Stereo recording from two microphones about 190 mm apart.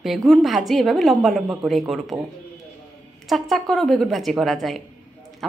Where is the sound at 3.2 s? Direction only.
Centre (ahead or behind).